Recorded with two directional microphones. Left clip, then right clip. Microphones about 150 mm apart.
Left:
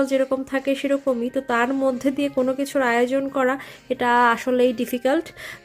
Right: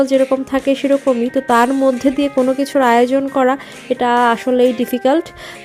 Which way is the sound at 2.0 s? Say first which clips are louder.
Right 7 dB; 30° right (ahead or behind).